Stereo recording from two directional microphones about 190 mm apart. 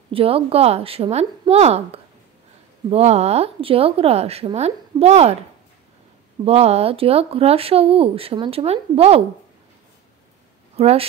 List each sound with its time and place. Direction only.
0.1 s speech: 30° right (ahead or behind)
6.4 s speech: 30° right (ahead or behind)
10.8 s speech: 35° right (ahead or behind)